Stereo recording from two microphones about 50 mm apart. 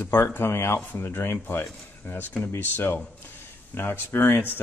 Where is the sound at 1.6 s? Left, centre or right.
Centre.